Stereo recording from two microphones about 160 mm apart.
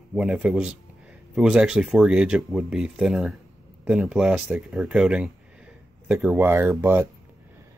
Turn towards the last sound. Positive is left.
turn(degrees=-15)  # may be behind; listen again after turning